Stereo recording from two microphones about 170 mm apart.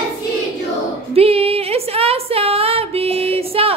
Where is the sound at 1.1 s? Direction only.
35° right (ahead or behind).